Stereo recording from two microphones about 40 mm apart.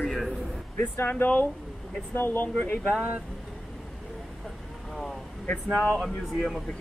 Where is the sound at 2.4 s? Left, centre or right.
Left.